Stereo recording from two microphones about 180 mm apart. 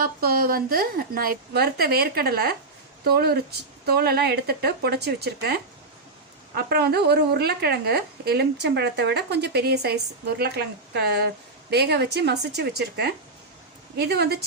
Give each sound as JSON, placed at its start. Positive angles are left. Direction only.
{"t": 0.0, "sound": "a woman's voice", "side_deg": -55}